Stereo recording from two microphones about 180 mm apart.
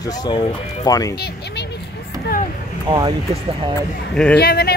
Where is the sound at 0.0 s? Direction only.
20° left (ahead or behind).